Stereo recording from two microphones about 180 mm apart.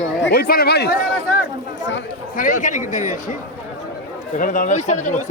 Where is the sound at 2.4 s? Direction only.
45° left (ahead or behind).